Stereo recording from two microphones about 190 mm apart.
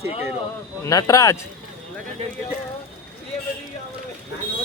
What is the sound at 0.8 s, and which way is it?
Speech, 15° left (ahead or behind).